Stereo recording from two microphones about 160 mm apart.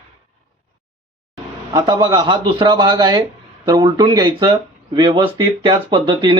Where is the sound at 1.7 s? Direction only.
25° right (ahead or behind).